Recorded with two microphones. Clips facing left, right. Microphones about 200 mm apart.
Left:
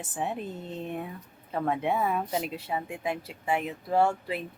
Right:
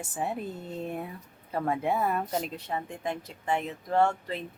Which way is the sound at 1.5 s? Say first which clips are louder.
Even; centre (ahead or behind).